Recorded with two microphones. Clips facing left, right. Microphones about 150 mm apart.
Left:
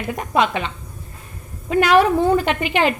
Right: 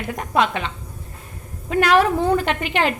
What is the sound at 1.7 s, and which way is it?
Speech, centre (ahead or behind).